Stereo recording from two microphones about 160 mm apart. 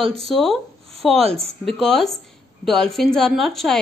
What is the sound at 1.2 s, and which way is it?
Speech, 40° right (ahead or behind).